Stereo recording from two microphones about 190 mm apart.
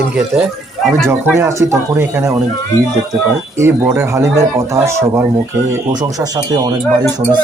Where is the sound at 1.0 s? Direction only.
10° right (ahead or behind).